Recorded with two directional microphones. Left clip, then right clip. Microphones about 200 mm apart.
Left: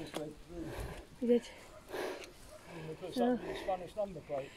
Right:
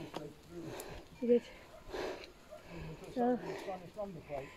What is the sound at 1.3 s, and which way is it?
Speech, 45° left (ahead or behind).